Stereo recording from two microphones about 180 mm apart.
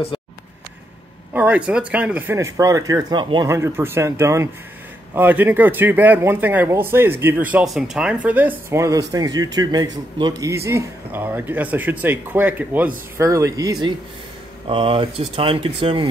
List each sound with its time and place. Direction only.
1.3 s speech: 10° right (ahead or behind); by 3.4 s 25° right (ahead or behind)
3.4 s speech: 15° right (ahead or behind); by 16.1 s 30° right (ahead or behind)